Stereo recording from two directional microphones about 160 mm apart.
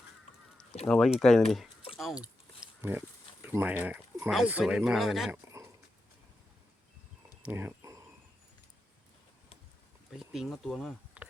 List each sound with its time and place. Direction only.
0.9 s speech: centre (ahead or behind)
2.6 s pig: 15° right (ahead or behind)
3.4 s speech: 10° right (ahead or behind)
7.4 s a sound: 15° right (ahead or behind)
10.2 s speech: 5° right (ahead or behind)
11.2 s a sound: 10° right (ahead or behind)